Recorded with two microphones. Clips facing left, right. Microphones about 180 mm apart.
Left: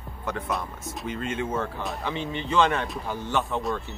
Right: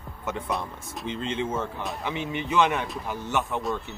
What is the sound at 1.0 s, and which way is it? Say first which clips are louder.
Speech: right 1 dB; 25° right (ahead or behind).